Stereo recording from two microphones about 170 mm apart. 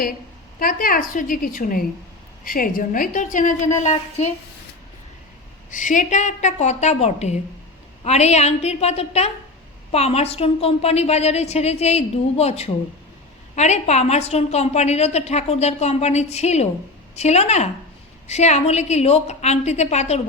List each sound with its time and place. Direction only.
0.6 s a woman's voice: 55° left (ahead or behind)
5.7 s a woman's voice: 50° left (ahead or behind)